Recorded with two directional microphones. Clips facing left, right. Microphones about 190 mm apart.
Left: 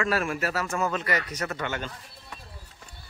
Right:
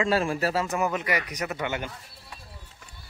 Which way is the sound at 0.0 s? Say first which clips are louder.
Right 3 dB; 30° right (ahead or behind).